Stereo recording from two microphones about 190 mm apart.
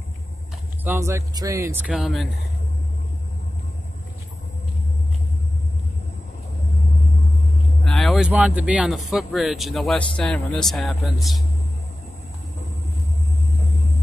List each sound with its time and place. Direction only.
0.8 s speech: 15° right (ahead or behind)
7.8 s speech: centre (ahead or behind)